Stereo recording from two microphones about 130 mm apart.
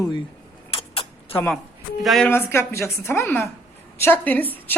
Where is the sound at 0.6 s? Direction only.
50° left (ahead or behind).